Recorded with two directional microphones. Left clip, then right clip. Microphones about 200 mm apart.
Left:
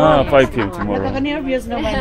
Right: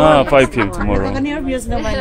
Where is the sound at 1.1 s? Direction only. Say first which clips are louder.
Left 1 dB; 50° right (ahead or behind).